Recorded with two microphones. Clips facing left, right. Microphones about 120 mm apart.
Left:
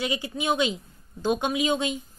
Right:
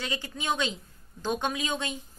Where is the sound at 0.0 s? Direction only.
10° left (ahead or behind).